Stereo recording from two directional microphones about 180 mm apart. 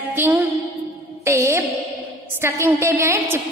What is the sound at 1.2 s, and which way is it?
Music, 15° right (ahead or behind).